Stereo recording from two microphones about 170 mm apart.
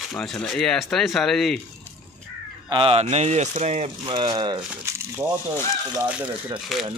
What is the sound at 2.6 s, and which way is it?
Speech, 30° right (ahead or behind).